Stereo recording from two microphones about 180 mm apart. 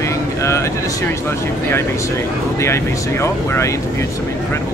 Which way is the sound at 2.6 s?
15° left (ahead or behind).